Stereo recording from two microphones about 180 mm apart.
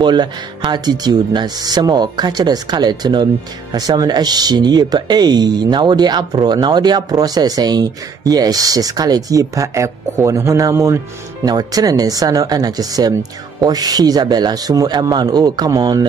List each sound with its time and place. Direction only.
0.0 s speech: 25° right (ahead or behind)